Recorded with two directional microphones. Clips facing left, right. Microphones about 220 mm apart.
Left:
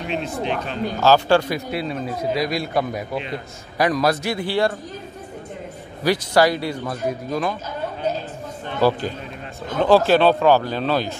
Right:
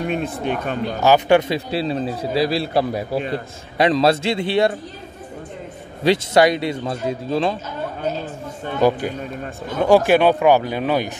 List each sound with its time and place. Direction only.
0.0 s speech: 50° right (ahead or behind)
1.0 s speech: 20° right (ahead or behind)
1.7 s a man's voice: 30° right (ahead or behind)
6.0 s a man's voice: 20° right (ahead or behind)
8.8 s speech: 15° right (ahead or behind)